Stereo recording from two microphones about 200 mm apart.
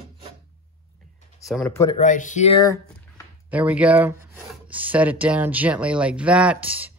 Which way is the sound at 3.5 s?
5° right (ahead or behind).